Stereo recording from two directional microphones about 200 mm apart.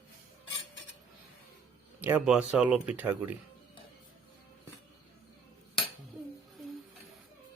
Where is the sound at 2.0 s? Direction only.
10° right (ahead or behind).